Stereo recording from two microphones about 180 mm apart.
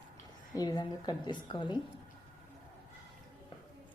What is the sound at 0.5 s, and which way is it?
Speech, 20° left (ahead or behind).